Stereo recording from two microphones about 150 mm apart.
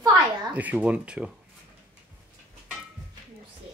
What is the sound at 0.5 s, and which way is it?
Speech, 10° right (ahead or behind).